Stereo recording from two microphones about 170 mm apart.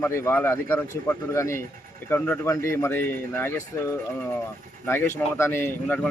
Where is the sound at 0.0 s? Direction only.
15° left (ahead or behind).